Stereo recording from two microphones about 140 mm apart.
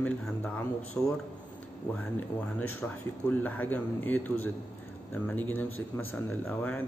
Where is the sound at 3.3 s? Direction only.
10° left (ahead or behind).